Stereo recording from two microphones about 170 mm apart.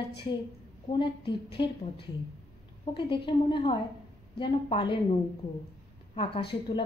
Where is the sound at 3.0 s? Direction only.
30° left (ahead or behind).